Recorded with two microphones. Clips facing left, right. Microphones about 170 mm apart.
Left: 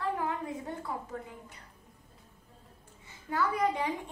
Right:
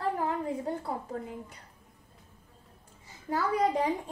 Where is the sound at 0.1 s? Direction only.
35° right (ahead or behind).